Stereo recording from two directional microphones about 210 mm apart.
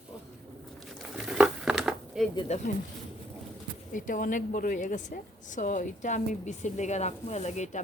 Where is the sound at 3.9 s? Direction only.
40° left (ahead or behind).